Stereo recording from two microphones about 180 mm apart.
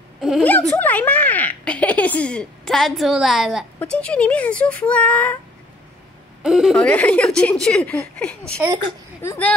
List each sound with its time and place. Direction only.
0.2 s a sound: centre (ahead or behind)
0.5 s a woman's voice: 10° left (ahead or behind)
6.4 s speech: centre (ahead or behind)